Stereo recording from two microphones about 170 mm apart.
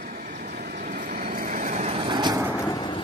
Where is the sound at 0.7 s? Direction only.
50° right (ahead or behind).